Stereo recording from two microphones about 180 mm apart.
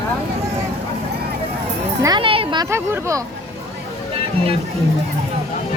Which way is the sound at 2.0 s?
25° right (ahead or behind).